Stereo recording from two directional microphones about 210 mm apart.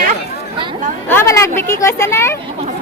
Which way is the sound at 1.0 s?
10° left (ahead or behind).